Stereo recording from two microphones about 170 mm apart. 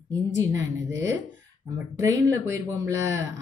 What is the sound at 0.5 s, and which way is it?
Speech, 15° right (ahead or behind).